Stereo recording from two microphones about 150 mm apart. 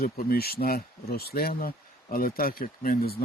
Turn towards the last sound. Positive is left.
turn(degrees=80)